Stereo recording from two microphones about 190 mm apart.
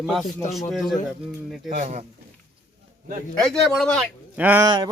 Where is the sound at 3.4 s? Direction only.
Centre (ahead or behind).